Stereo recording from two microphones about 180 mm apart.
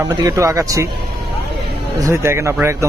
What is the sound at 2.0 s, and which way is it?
Speech, 15° right (ahead or behind).